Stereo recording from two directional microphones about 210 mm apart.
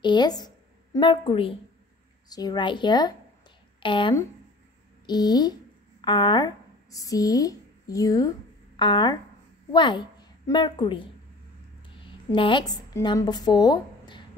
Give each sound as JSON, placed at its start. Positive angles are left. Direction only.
{"t": 0.0, "sound": "a woman's voice", "side_deg": 20}
{"t": 12.3, "sound": "a woman's voice", "side_deg": 25}